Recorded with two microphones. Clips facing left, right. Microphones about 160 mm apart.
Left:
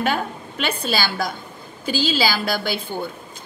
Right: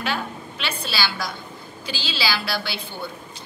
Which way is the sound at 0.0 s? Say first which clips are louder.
Left 5 dB; 50° left (ahead or behind).